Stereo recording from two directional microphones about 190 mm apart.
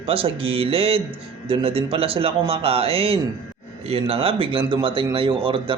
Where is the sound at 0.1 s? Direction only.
30° right (ahead or behind).